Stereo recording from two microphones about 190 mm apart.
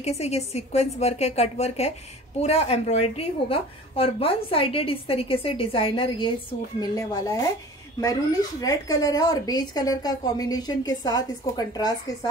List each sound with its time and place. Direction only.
0.0 s a woman's voice: 35° left (ahead or behind)